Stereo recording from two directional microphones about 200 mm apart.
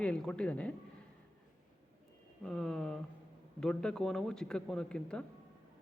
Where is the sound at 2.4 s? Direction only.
Centre (ahead or behind).